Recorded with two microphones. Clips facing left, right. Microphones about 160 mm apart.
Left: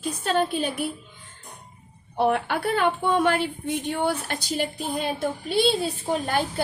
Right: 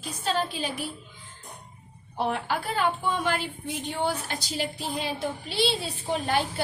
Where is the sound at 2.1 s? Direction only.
60° left (ahead or behind).